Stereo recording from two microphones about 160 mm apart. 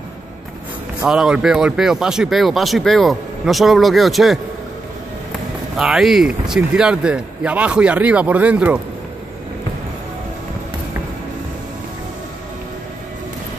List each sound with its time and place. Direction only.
1.0 s speech: 5° right (ahead or behind)
5.8 s speech: 5° right (ahead or behind)